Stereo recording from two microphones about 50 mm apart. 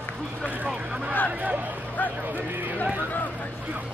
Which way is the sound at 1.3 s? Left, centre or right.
Right.